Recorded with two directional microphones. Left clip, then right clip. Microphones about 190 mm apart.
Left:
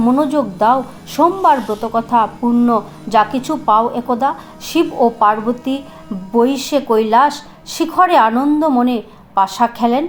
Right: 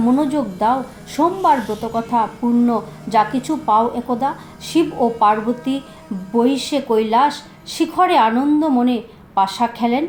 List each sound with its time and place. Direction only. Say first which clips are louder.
0.0 s speech: left 3 dB; 20° left (ahead or behind)
1.5 s speech: left 3 dB; centre (ahead or behind)
1.8 s speech: left 4 dB; 20° left (ahead or behind)